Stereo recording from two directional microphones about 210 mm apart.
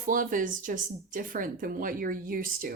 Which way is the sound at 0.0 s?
40° right (ahead or behind).